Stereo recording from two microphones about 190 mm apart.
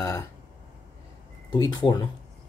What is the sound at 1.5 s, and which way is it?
Speech, 20° left (ahead or behind).